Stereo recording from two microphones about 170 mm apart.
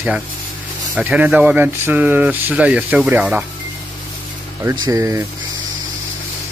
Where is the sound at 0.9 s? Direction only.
10° right (ahead or behind).